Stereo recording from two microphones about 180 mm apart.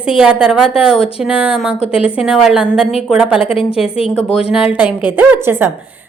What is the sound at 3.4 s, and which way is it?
Speech, 30° left (ahead or behind).